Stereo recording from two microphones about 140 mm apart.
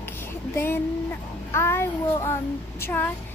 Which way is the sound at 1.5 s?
15° left (ahead or behind).